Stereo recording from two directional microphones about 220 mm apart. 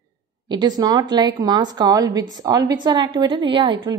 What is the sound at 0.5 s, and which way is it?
A woman's voice, 20° right (ahead or behind).